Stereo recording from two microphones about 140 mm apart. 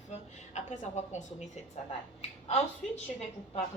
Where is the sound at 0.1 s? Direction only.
55° left (ahead or behind).